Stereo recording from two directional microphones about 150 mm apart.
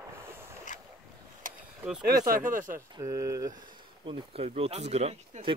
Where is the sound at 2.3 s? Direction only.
65° right (ahead or behind).